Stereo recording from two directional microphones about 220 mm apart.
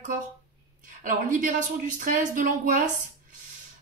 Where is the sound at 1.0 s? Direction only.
35° right (ahead or behind).